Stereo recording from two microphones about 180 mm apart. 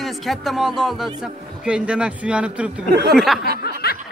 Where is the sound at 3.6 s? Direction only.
60° left (ahead or behind).